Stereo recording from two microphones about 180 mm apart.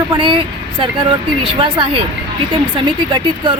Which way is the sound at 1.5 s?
25° right (ahead or behind).